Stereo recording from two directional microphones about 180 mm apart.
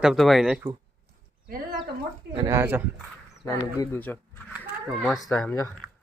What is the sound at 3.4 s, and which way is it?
Speech, 15° left (ahead or behind).